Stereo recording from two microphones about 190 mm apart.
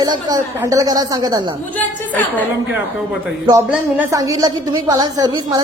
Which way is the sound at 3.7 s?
15° right (ahead or behind).